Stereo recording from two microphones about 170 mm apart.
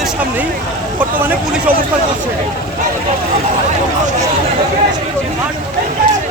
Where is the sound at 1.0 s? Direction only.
10° right (ahead or behind).